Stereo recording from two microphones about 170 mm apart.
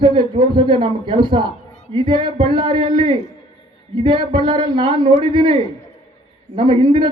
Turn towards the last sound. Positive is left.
turn(degrees=-30)  # may be behind; listen again after turning